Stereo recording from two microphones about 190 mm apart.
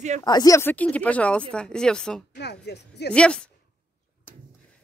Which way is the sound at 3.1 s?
5° left (ahead or behind).